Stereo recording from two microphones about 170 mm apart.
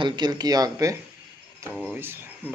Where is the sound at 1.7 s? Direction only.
5° right (ahead or behind).